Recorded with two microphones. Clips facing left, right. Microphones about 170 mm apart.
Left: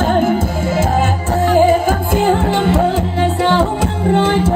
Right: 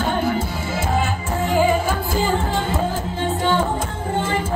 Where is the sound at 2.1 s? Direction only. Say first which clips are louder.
Left 8 dB; 70° left (ahead or behind).